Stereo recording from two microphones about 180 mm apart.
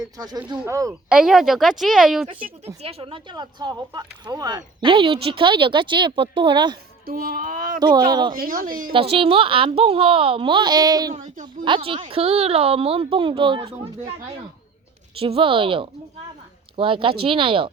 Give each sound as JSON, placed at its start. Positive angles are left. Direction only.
{"t": 0.0, "sound": "speech", "side_deg": -20}
{"t": 1.1, "sound": "speech", "side_deg": -5}
{"t": 2.8, "sound": "speech", "side_deg": -30}
{"t": 7.0, "sound": "speech", "side_deg": -55}
{"t": 7.9, "sound": "speech", "side_deg": -25}
{"t": 8.4, "sound": "a woman's voice", "side_deg": -50}
{"t": 8.9, "sound": "a woman's voice", "side_deg": -30}
{"t": 15.2, "sound": "speech", "side_deg": -30}